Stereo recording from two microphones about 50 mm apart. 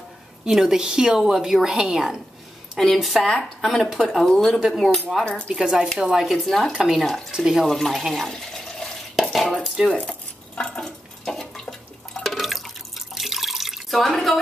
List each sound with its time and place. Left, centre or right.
0.5 s a woman's voice: centre
5.2 s speech: left
5.5 s a woman's voice: centre
7.3 s a woman's voice: centre
7.6 s speech: centre
8.3 s water: centre
9.8 s dishes: left
10.8 s water: centre